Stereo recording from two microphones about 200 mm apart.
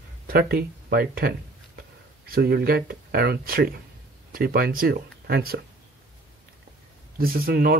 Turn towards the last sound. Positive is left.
turn(degrees=-50)  # may be behind; listen again after turning